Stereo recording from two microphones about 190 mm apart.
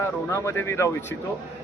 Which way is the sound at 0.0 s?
15° left (ahead or behind).